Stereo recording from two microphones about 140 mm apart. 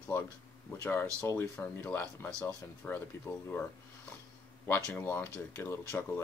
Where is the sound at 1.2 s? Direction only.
15° left (ahead or behind).